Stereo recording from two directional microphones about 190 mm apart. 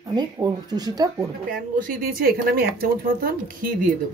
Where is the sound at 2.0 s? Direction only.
50° right (ahead or behind).